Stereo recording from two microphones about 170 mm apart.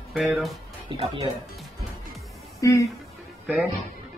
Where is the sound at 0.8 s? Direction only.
35° right (ahead or behind).